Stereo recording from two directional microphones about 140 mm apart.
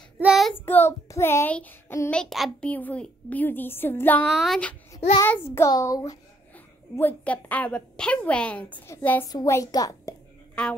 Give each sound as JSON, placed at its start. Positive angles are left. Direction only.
{"t": 0.2, "sound": "child singing", "side_deg": 0}
{"t": 0.7, "sound": "a woman's voice", "side_deg": 15}
{"t": 2.1, "sound": "a child's voice", "side_deg": 0}
{"t": 5.2, "sound": "a child's voice", "side_deg": 15}
{"t": 7.0, "sound": "a woman's voice", "side_deg": 15}
{"t": 10.5, "sound": "a sound", "side_deg": 10}